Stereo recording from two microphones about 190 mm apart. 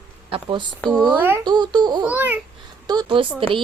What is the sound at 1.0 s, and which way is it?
Speech, 10° right (ahead or behind).